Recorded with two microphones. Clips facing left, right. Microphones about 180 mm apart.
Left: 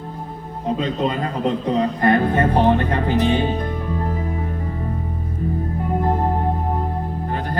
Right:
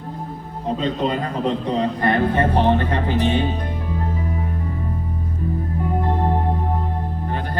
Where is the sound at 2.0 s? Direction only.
45° left (ahead or behind).